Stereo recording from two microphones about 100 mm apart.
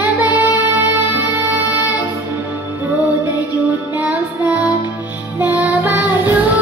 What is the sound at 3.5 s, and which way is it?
Music, 15° right (ahead or behind).